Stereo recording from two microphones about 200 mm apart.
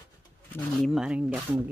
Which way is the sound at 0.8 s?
Centre (ahead or behind).